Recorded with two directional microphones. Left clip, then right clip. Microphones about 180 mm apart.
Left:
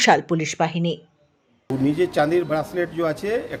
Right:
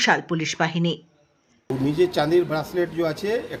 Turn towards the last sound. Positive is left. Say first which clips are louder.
# left 1 dB
turn(degrees=30)  # may be behind; listen again after turning